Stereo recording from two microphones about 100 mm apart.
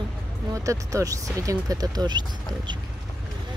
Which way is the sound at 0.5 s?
35° right (ahead or behind).